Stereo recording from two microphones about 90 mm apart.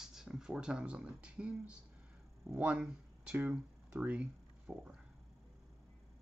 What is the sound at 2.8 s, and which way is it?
Speech, 5° right (ahead or behind).